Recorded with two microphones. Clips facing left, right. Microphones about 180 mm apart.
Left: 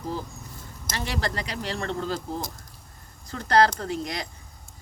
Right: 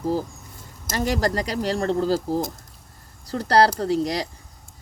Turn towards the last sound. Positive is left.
turn(degrees=-35)  # may be behind; listen again after turning